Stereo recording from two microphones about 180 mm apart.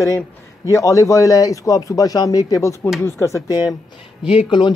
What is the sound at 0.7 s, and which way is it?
A man's voice, 15° left (ahead or behind).